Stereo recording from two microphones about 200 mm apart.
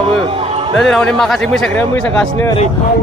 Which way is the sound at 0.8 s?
5° left (ahead or behind).